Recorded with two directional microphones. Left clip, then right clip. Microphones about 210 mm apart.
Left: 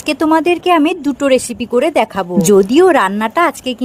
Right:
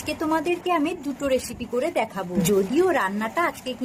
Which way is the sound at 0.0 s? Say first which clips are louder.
Left 12 dB; 45° left (ahead or behind).